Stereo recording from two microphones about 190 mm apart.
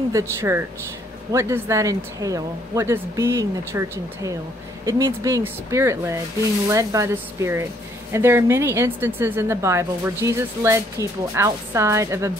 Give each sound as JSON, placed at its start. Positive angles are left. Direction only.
{"t": 0.1, "sound": "a woman's voice", "side_deg": -15}